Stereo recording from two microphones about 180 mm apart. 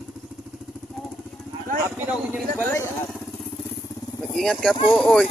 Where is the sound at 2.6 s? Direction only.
10° left (ahead or behind).